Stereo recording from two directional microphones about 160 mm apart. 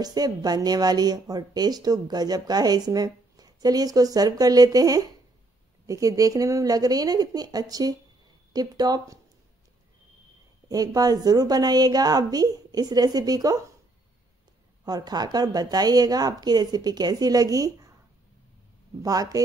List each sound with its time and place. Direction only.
0.0 s a woman's voice: 25° right (ahead or behind)
10.7 s a woman's voice: 25° right (ahead or behind)
14.9 s a woman's voice: 25° right (ahead or behind)
19.0 s a woman's voice: 20° right (ahead or behind)